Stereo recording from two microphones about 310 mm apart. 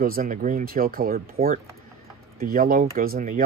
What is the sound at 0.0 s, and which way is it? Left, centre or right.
Speech, right.